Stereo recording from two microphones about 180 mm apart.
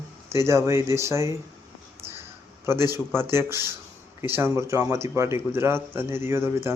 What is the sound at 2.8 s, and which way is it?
A man's voice, 15° right (ahead or behind).